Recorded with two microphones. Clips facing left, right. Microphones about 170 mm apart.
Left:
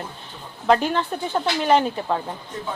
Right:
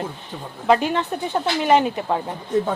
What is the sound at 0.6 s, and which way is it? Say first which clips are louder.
A woman's voice: right 1 dB; 5° right (ahead or behind).